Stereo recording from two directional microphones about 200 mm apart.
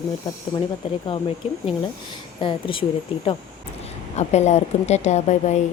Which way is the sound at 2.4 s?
25° left (ahead or behind).